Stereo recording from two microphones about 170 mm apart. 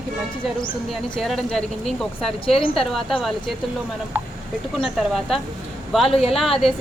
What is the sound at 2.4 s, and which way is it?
Speech, 30° left (ahead or behind).